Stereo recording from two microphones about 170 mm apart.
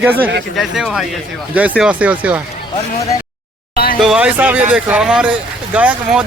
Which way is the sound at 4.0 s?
5° right (ahead or behind).